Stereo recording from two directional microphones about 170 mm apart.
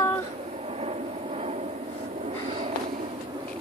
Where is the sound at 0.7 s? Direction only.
40° right (ahead or behind).